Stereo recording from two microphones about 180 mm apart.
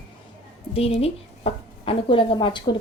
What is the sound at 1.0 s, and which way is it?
Speech, 30° left (ahead or behind).